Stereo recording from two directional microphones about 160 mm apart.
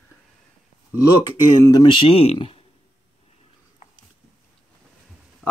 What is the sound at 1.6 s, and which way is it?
Speech, 25° left (ahead or behind).